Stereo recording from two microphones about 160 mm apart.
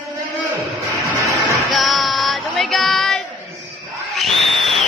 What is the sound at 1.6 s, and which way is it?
Music, centre (ahead or behind).